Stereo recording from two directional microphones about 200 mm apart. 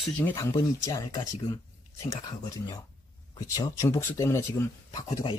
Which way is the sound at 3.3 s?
20° left (ahead or behind).